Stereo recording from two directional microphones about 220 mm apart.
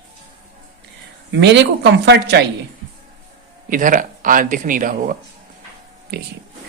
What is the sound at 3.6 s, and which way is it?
Speech, 35° right (ahead or behind).